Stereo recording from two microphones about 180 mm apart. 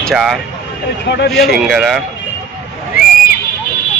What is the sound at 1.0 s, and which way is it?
Speech, 70° left (ahead or behind).